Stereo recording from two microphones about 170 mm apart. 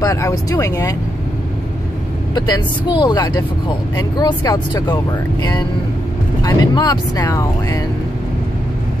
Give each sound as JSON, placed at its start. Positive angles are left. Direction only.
{"t": 0.0, "sound": "speech", "side_deg": 20}
{"t": 2.3, "sound": "speech", "side_deg": 25}